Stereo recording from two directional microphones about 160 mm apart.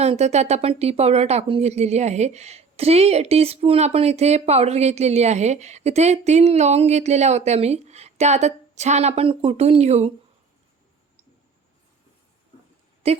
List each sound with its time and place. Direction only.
0.0 s speech: 40° right (ahead or behind)
13.0 s a woman's voice: 40° right (ahead or behind)